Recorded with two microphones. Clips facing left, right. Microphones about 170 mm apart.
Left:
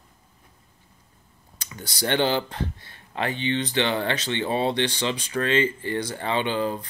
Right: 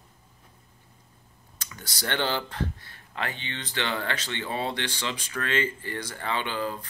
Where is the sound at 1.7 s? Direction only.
25° left (ahead or behind).